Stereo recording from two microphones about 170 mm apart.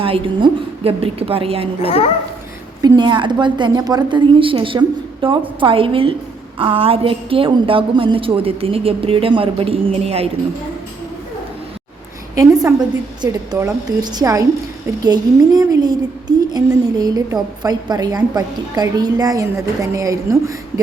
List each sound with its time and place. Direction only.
0.0 s a woman's voice: 30° right (ahead or behind)
2.8 s a woman's voice: 25° right (ahead or behind)
13.2 s a woman's voice: 20° right (ahead or behind)